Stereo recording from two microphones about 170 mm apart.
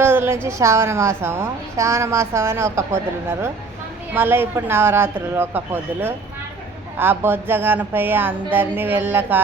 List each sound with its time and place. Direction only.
0.0 s music: 15° right (ahead or behind)
0.4 s a woman's voice: 15° right (ahead or behind)